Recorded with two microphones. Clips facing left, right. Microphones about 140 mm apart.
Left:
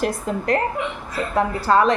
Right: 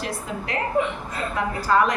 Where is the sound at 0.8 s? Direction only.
35° right (ahead or behind).